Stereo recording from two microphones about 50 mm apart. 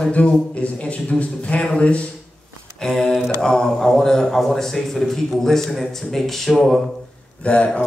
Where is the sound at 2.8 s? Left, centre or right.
Centre.